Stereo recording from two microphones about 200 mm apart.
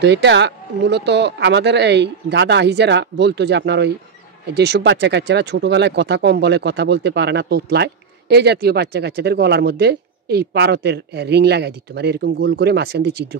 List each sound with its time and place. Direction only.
0.0 s speech: 60° right (ahead or behind)